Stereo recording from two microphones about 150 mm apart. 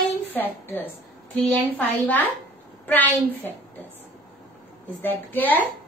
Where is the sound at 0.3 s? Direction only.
15° left (ahead or behind).